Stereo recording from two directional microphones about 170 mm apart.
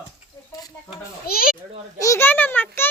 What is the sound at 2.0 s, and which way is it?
Speech, 15° left (ahead or behind).